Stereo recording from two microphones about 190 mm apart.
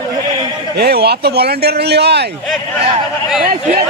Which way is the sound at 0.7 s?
60° right (ahead or behind).